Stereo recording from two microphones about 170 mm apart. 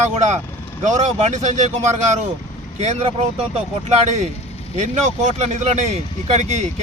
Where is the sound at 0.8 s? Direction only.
45° right (ahead or behind).